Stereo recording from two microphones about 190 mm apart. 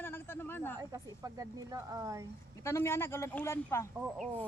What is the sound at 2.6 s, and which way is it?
Speech, 15° left (ahead or behind).